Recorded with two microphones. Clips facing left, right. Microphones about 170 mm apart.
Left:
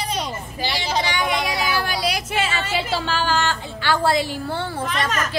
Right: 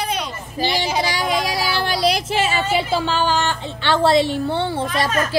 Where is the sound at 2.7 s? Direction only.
20° right (ahead or behind).